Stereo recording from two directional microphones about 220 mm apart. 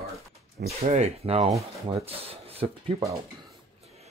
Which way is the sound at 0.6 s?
30° right (ahead or behind).